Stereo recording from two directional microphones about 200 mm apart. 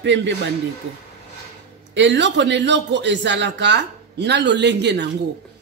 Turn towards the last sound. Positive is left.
turn(degrees=-60)  # may be behind; listen again after turning